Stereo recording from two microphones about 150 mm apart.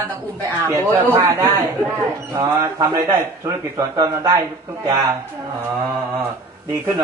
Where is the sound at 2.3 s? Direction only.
25° right (ahead or behind).